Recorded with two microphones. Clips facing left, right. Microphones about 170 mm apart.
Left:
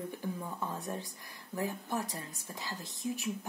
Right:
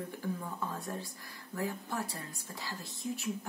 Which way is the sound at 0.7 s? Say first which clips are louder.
Left 1 dB; 20° left (ahead or behind).